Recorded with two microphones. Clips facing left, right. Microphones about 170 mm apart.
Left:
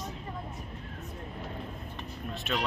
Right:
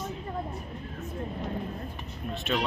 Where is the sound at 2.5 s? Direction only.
Centre (ahead or behind).